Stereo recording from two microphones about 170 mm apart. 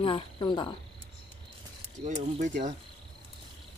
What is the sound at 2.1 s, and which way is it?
Speech, 45° right (ahead or behind).